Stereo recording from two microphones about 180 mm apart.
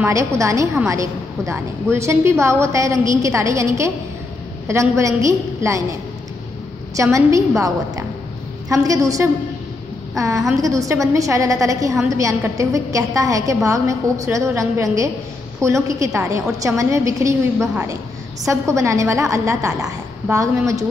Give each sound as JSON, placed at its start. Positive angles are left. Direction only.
{"t": 0.0, "sound": "a woman's voice", "side_deg": -15}
{"t": 7.0, "sound": "a woman's voice", "side_deg": -15}
{"t": 18.5, "sound": "a woman's voice", "side_deg": -15}